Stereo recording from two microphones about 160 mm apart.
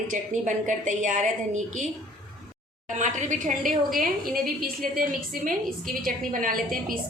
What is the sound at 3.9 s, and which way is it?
A woman's voice, 60° right (ahead or behind).